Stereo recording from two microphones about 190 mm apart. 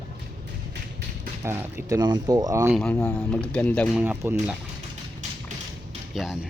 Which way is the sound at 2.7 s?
5° left (ahead or behind).